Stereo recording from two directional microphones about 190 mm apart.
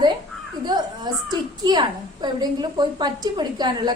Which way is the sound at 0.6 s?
20° right (ahead or behind).